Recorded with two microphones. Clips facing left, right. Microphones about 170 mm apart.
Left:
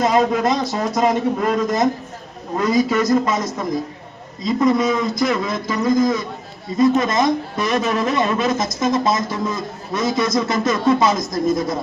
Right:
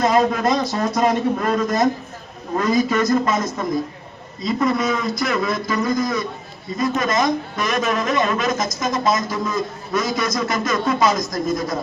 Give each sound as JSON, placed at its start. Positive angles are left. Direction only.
{"t": 0.0, "sound": "a man's voice", "side_deg": 15}